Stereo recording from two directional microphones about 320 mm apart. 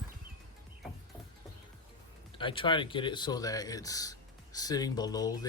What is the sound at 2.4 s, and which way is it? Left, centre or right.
A man's voice, centre.